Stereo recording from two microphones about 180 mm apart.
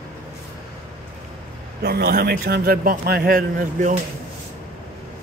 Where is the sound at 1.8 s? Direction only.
60° right (ahead or behind).